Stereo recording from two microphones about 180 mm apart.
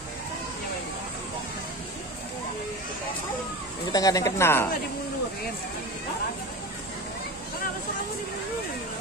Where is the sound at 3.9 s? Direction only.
20° left (ahead or behind).